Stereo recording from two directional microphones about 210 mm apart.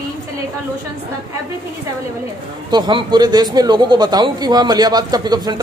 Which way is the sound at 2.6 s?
20° right (ahead or behind).